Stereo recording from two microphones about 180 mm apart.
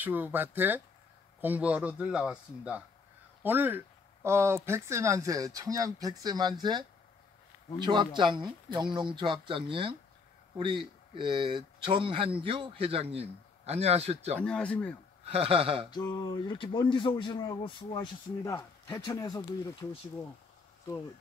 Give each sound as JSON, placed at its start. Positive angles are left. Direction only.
{"t": 0.0, "sound": "a man's voice", "side_deg": -10}
{"t": 7.8, "sound": "speech", "side_deg": -25}
{"t": 14.4, "sound": "speech", "side_deg": 5}
{"t": 15.2, "sound": "speech", "side_deg": -30}
{"t": 15.9, "sound": "speech", "side_deg": 20}